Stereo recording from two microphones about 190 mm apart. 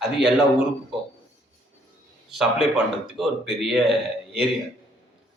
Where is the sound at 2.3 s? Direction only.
Centre (ahead or behind).